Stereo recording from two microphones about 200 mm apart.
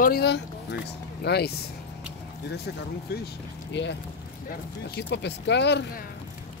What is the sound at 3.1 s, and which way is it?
Speech, 50° left (ahead or behind).